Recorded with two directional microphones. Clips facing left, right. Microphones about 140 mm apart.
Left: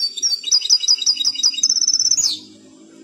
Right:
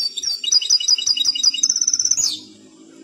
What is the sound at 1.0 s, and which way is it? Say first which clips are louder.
Bird: right 1 dB; 35° left (ahead or behind).